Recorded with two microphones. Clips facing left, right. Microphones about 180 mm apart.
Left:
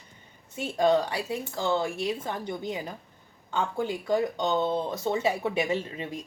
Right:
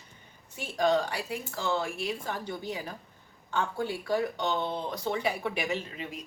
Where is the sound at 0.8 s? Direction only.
20° left (ahead or behind).